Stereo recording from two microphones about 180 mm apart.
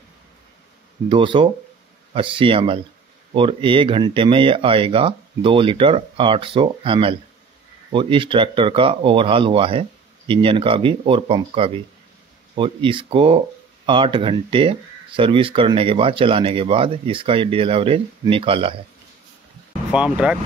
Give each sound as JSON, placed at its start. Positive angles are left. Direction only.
{"t": 1.0, "sound": "speech", "side_deg": -30}
{"t": 19.9, "sound": "speech", "side_deg": -5}